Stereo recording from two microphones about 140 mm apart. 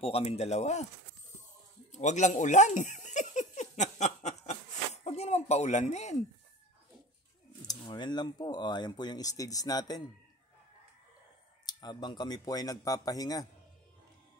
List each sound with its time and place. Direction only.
0.0 s speech: 45° left (ahead or behind)
1.9 s a sound: 60° left (ahead or behind)
7.6 s speech: 35° left (ahead or behind)
11.6 s speech: 30° left (ahead or behind)